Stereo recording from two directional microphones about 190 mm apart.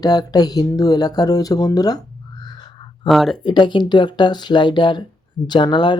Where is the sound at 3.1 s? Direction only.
Centre (ahead or behind).